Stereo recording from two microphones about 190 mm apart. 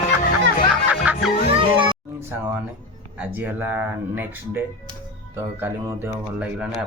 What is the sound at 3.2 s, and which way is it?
Speech, 10° right (ahead or behind).